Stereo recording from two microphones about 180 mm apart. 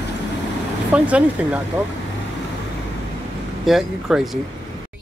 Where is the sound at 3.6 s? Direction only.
Centre (ahead or behind).